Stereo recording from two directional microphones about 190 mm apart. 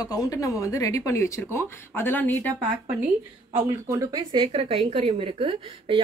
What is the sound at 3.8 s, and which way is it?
A woman's voice, 20° right (ahead or behind).